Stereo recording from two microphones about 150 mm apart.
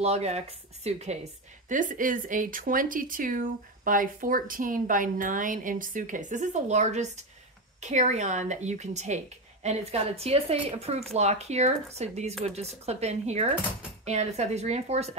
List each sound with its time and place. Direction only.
0.0 s a woman's voice: 45° right (ahead or behind)
1.7 s a woman's voice: 60° right (ahead or behind)